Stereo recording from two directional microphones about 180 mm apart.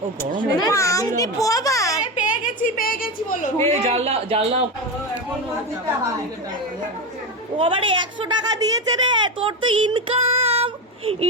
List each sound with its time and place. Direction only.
0.6 s a child's voice: 15° left (ahead or behind)
2.3 s a sound: 50° left (ahead or behind)
3.7 s speech: 40° right (ahead or behind)
7.5 s speech: 30° right (ahead or behind)